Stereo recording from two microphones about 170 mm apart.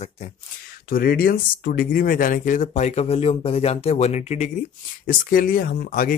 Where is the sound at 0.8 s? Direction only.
60° left (ahead or behind); by 4.5 s 40° left (ahead or behind).